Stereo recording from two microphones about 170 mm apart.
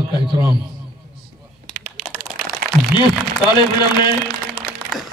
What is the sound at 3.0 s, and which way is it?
Speech, 25° left (ahead or behind).